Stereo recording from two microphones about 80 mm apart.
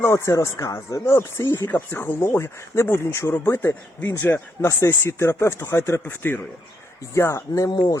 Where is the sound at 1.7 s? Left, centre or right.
Left.